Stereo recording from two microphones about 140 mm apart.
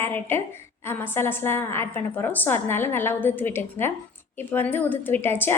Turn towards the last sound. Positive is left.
turn(degrees=15)  # may be behind; listen again after turning